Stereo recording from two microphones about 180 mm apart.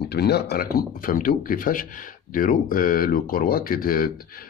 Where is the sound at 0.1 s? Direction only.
65° left (ahead or behind).